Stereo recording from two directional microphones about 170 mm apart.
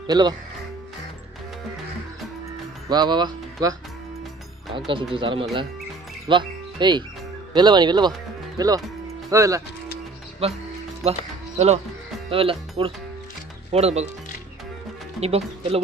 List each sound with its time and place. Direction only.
0.0 s speech: 25° right (ahead or behind)
2.9 s speech: 25° right (ahead or behind)
4.7 s speech: 30° right (ahead or behind)
10.4 s speech: 35° right (ahead or behind)
15.1 s speech: 35° right (ahead or behind)